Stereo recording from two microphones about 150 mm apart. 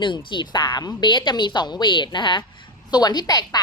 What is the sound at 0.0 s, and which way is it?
A woman's voice, 30° left (ahead or behind).